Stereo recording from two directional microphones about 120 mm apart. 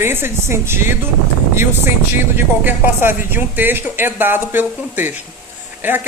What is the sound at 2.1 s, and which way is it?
A woman's voice, 20° right (ahead or behind).